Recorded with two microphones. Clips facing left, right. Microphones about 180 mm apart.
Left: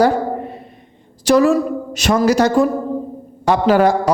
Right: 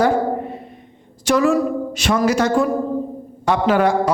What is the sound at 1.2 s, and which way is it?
A woman's voice, 35° left (ahead or behind).